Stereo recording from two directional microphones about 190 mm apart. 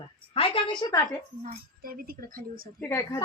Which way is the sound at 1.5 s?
50° right (ahead or behind).